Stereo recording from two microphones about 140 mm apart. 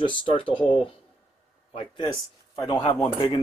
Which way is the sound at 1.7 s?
35° left (ahead or behind).